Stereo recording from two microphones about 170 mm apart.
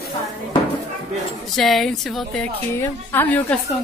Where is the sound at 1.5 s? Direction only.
Centre (ahead or behind).